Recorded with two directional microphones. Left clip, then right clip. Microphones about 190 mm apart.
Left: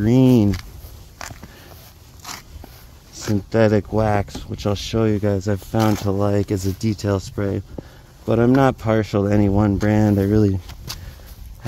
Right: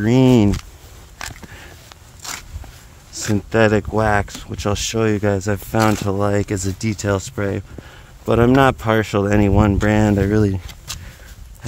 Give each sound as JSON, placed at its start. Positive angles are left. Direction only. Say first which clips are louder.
{"t": 0.2, "sound": "speech", "louder": "right 2 dB", "side_deg": -40}
{"t": 3.1, "sound": "speech", "louder": "right 2 dB", "side_deg": 0}